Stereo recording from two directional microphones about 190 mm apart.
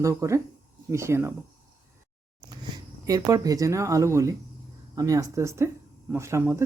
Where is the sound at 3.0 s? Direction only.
20° right (ahead or behind).